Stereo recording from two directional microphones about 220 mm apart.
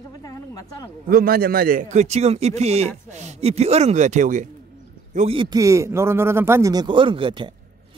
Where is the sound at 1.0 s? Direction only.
40° right (ahead or behind).